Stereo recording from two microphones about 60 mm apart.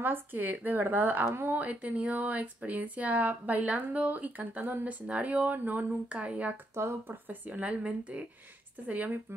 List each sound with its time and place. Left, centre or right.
0.0 s speech: right
1.2 s speech: right
1.6 s speech: right
6.7 s speech: right
7.2 s speech: right